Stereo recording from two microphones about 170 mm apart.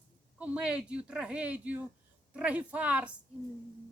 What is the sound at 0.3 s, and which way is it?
Speech, 10° right (ahead or behind).